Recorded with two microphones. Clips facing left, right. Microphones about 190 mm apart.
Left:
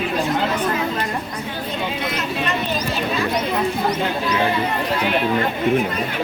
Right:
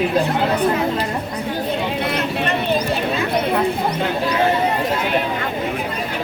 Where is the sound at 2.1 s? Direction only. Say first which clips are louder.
Right 3 dB; 60° right (ahead or behind).